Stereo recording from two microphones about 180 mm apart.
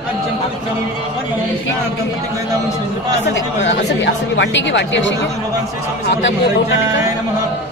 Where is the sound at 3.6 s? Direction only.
90° left.